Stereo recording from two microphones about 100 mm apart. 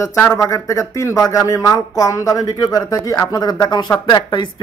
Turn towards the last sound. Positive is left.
turn(degrees=45)  # may be behind; listen again after turning